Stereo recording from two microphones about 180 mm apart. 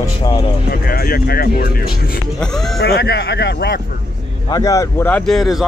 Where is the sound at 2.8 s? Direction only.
65° left (ahead or behind).